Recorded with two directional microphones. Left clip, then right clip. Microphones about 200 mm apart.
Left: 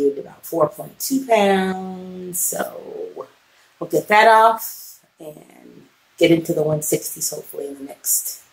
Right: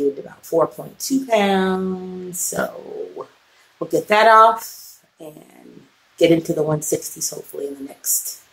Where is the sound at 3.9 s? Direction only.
10° right (ahead or behind).